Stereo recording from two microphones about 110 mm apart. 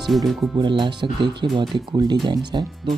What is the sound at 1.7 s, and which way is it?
Speech, 40° right (ahead or behind).